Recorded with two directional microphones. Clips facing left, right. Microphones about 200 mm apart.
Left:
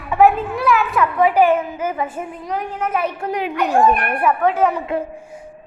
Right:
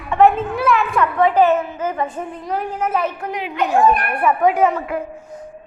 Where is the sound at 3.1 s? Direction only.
30° left (ahead or behind).